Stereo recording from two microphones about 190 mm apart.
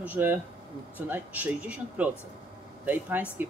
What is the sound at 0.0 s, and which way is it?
A man's voice, 10° right (ahead or behind).